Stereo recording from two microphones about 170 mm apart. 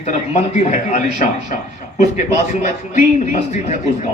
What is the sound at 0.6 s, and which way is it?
Speech, 45° left (ahead or behind).